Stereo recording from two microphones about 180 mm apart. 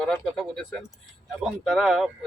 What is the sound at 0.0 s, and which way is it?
Speech, 5° left (ahead or behind).